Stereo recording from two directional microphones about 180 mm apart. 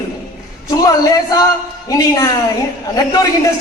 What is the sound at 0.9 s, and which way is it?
A woman's voice, 20° left (ahead or behind).